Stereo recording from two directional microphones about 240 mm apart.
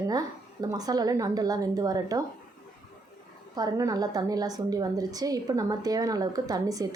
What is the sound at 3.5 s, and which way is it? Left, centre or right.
Speech, centre.